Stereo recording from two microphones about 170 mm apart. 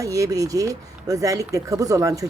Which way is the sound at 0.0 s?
20° right (ahead or behind).